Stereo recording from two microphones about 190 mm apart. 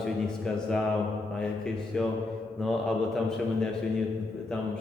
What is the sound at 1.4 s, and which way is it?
A man's voice, 5° left (ahead or behind).